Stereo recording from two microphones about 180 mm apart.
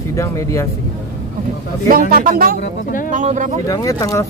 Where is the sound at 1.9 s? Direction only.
50° right (ahead or behind).